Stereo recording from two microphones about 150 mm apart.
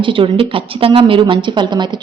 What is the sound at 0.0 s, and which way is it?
Speech, 35° right (ahead or behind).